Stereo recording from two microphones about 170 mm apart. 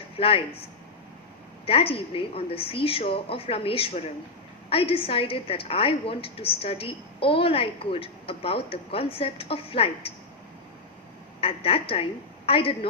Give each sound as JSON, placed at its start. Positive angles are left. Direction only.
{"t": 0.2, "sound": "a woman's voice", "side_deg": 30}
{"t": 1.6, "sound": "a woman's voice", "side_deg": 35}
{"t": 11.3, "sound": "a woman's voice", "side_deg": 35}